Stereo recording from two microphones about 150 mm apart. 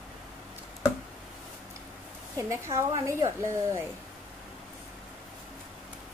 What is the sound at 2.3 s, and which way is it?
Speech, 20° right (ahead or behind).